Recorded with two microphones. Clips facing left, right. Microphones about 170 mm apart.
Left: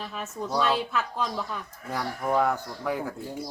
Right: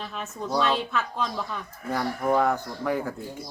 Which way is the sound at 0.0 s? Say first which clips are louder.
Even; 5° left (ahead or behind).